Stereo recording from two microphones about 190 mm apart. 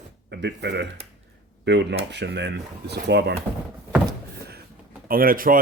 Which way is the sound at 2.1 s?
65° right (ahead or behind).